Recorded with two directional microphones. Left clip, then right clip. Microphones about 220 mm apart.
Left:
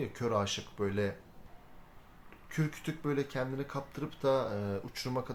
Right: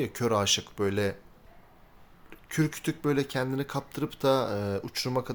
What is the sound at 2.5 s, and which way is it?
Speech, 45° right (ahead or behind).